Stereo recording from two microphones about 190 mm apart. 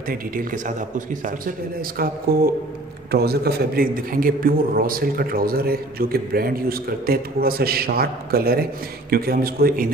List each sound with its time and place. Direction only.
0.1 s a man's voice: 45° right (ahead or behind)